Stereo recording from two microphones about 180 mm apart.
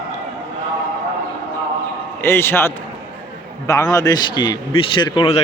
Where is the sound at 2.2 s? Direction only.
15° left (ahead or behind).